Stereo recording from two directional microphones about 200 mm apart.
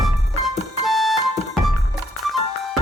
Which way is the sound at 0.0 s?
Centre (ahead or behind).